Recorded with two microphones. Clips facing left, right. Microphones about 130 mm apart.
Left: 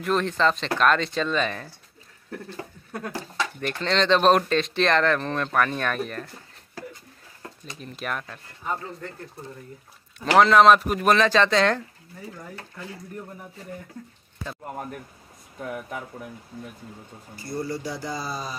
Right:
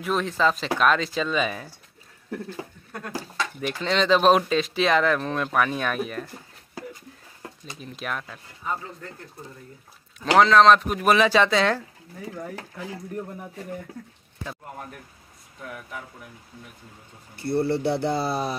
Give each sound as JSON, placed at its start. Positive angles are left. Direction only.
{"t": 0.0, "sound": "speech", "side_deg": 0}
{"t": 2.9, "sound": "speech", "side_deg": 5}
{"t": 7.6, "sound": "speech", "side_deg": 0}
{"t": 10.1, "sound": "speech", "side_deg": 0}
{"t": 17.4, "sound": "speech", "side_deg": -65}